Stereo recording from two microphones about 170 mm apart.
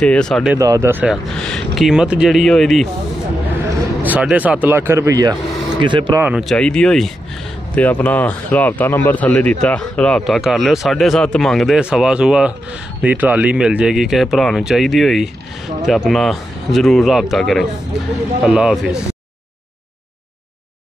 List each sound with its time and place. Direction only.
0.0 s speech: 5° left (ahead or behind)
0.6 s speech: 20° right (ahead or behind)
1.1 s speech: centre (ahead or behind)
4.0 s speech: 10° right (ahead or behind); by 6.1 s 30° right (ahead or behind)
6.1 s speech: 10° right (ahead or behind)
6.4 s speech: 5° left (ahead or behind)